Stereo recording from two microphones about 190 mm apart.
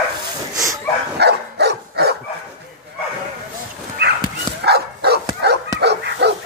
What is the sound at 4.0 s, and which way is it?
Bow-wow, 60° right (ahead or behind).